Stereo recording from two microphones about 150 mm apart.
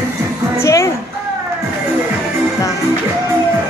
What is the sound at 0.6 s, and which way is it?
Music, 20° left (ahead or behind).